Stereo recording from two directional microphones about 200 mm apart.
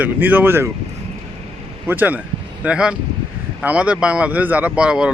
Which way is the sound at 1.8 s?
10° right (ahead or behind).